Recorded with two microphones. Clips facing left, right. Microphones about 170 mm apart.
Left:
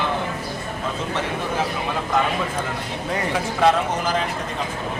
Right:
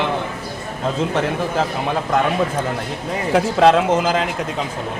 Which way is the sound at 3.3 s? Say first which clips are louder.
Right 6 dB; 80° right.